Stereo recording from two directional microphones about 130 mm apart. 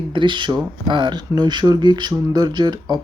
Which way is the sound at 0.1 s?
40° right (ahead or behind).